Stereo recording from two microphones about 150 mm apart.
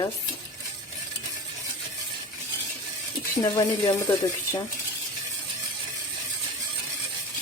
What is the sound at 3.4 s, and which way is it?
Speech, 25° left (ahead or behind).